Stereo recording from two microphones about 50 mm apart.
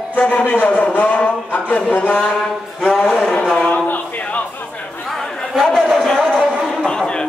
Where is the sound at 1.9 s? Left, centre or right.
Left.